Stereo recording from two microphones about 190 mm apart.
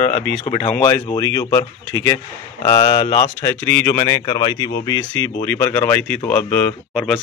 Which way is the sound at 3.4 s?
15° left (ahead or behind).